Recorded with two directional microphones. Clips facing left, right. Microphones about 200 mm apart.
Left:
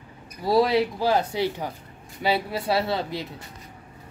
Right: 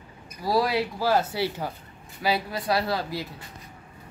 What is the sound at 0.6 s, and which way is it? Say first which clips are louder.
Speech: left 4 dB; 20° left (ahead or behind).